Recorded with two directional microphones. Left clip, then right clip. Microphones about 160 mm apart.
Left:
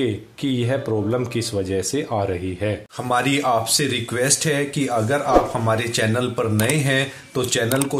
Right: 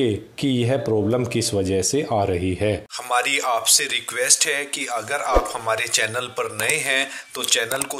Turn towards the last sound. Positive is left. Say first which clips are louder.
# left 1 dB
turn(degrees=-45)  # may be behind; listen again after turning